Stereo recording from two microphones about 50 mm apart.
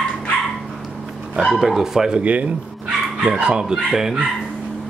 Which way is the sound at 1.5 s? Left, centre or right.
Centre.